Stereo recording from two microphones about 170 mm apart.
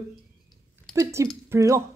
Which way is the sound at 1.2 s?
15° right (ahead or behind).